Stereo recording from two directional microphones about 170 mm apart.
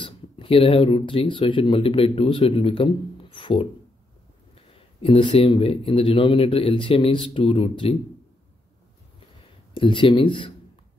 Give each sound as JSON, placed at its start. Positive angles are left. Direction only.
{"t": 0.0, "sound": "speech", "side_deg": 30}
{"t": 4.7, "sound": "a man's voice", "side_deg": 30}
{"t": 9.8, "sound": "speech", "side_deg": 30}